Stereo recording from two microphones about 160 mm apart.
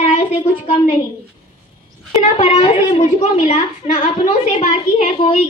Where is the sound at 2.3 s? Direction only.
45° left (ahead or behind).